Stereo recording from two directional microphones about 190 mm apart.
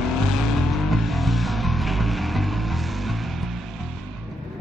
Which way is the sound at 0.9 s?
Centre (ahead or behind).